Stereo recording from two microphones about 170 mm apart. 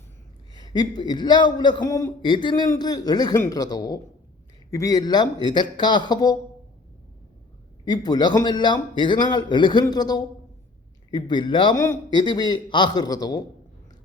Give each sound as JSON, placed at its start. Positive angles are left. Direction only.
{"t": 0.5, "sound": "a man's voice", "side_deg": 25}
{"t": 7.9, "sound": "a man's voice", "side_deg": 25}